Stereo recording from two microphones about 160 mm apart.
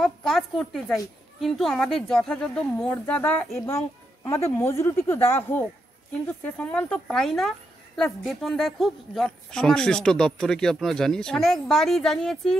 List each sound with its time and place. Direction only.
0.0 s speech: centre (ahead or behind)
3.6 s a woman's voice: 20° left (ahead or behind)